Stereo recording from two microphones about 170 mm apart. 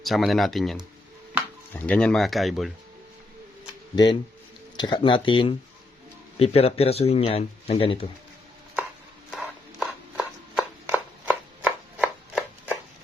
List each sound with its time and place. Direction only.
0.0 s speech: centre (ahead or behind)
3.9 s speech: 25° left (ahead or behind)
9.8 s chopping: 5° right (ahead or behind)